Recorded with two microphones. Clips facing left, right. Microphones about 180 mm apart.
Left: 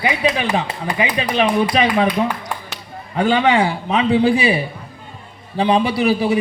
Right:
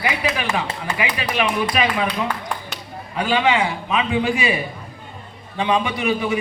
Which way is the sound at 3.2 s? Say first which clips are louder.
Left 4 dB; 30° left (ahead or behind).